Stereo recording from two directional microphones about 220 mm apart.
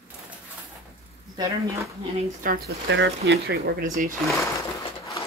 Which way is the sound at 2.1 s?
40° right (ahead or behind).